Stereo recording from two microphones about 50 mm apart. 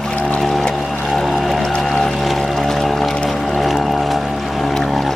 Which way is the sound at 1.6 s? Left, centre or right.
Centre.